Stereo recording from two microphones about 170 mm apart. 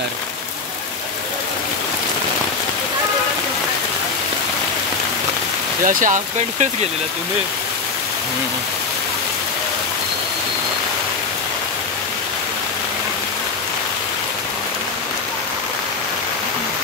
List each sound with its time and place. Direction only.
5.9 s speech: 50° right (ahead or behind)